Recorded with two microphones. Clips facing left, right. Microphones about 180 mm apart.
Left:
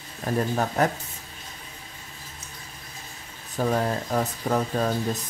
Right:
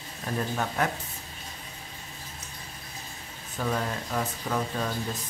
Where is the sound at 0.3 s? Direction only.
45° left (ahead or behind).